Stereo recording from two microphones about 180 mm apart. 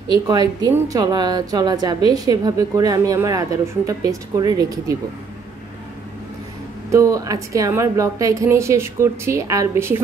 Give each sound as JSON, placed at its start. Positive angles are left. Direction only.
{"t": 0.1, "sound": "a woman's voice", "side_deg": -20}
{"t": 6.9, "sound": "a woman's voice", "side_deg": -20}